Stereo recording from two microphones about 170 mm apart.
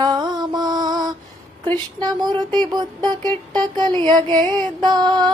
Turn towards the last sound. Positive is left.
turn(degrees=-25)  # may be behind; listen again after turning